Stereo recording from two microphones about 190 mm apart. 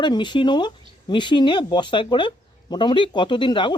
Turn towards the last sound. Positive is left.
turn(degrees=25)  # may be behind; listen again after turning